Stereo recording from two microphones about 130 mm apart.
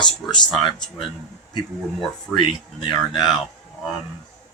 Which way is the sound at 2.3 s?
35° left (ahead or behind).